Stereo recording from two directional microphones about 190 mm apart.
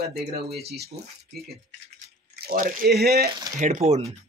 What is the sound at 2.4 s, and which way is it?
Speech, 50° right (ahead or behind).